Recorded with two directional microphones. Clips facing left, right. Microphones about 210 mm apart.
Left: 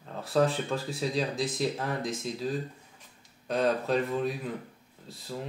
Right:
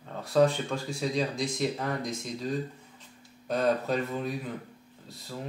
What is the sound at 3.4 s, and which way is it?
Speech, centre (ahead or behind).